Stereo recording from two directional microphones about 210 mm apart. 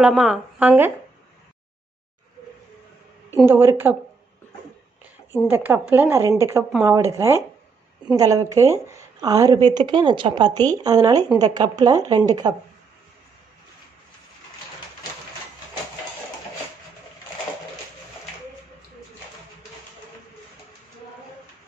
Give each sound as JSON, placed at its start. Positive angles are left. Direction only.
{"t": 0.0, "sound": "a woman's voice", "side_deg": -5}
{"t": 3.4, "sound": "a woman's voice", "side_deg": -10}
{"t": 5.5, "sound": "a woman's voice", "side_deg": -10}